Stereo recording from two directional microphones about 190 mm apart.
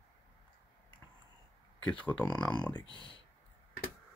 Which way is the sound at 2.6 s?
20° left (ahead or behind).